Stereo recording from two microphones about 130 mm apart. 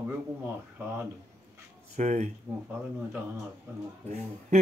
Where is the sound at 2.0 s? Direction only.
65° right (ahead or behind).